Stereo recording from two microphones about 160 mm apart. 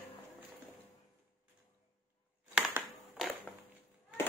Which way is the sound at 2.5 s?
5° right (ahead or behind).